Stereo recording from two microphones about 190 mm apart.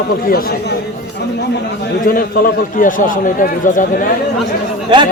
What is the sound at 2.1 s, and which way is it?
A man's voice, 50° left (ahead or behind).